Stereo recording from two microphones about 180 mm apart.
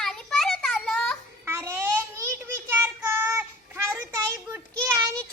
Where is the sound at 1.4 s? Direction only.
15° right (ahead or behind).